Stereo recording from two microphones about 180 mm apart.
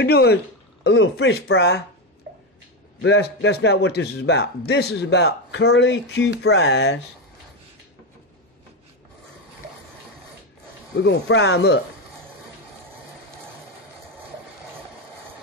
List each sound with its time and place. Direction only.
0.0 s a man's voice: 65° left (ahead or behind)
0.8 s speech: 85° left
2.3 s a sound: 70° right (ahead or behind)
3.0 s a man's voice: 80° left
11.0 s speech: 85° left